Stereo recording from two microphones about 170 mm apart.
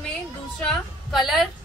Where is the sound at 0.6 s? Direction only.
Centre (ahead or behind).